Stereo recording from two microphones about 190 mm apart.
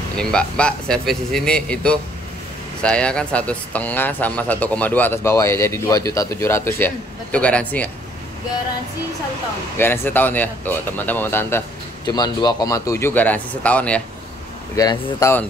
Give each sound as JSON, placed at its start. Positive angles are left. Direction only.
{"t": 0.2, "sound": "speech", "side_deg": 5}
{"t": 9.8, "sound": "speech", "side_deg": 10}
{"t": 14.8, "sound": "speech", "side_deg": 20}